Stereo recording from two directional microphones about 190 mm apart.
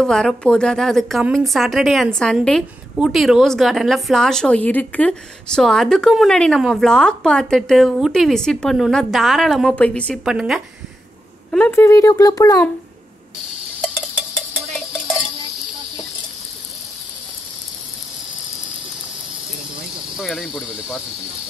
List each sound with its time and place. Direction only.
0.0 s a woman's voice: 5° left (ahead or behind)
11.5 s speech: 10° left (ahead or behind)
13.7 s a sound: 5° left (ahead or behind)
20.2 s a woman's voice: centre (ahead or behind)